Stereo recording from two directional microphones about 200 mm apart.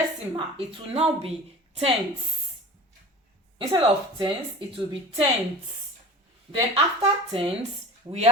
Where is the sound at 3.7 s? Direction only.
25° right (ahead or behind).